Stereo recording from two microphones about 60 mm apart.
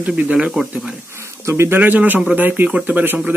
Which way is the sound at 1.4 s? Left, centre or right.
Right.